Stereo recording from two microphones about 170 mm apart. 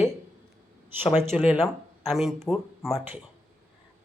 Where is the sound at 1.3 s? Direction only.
5° right (ahead or behind).